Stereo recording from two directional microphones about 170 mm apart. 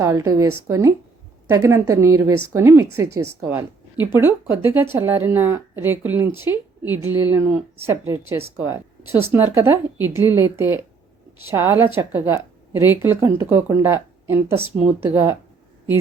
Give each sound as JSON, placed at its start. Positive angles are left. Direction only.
{"t": 0.0, "sound": "a woman's voice", "side_deg": -15}